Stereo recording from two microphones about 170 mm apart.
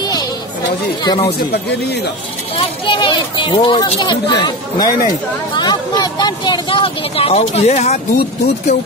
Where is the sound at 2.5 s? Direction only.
30° left (ahead or behind).